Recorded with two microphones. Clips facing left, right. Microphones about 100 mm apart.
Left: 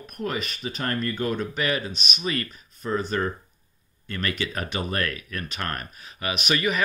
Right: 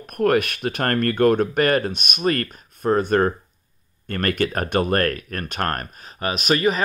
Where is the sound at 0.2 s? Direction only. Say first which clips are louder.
Right 11 dB; 65° right (ahead or behind).